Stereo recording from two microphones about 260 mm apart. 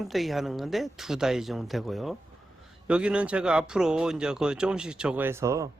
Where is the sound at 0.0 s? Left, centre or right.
Centre.